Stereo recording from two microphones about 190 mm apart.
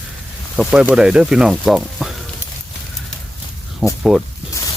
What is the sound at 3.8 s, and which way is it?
Speech, centre (ahead or behind).